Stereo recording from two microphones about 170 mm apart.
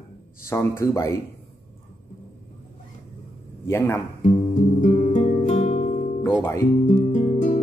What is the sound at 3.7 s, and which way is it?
Speech, 15° left (ahead or behind).